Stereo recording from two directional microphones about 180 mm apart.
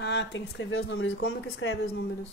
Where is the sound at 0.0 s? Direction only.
75° left (ahead or behind).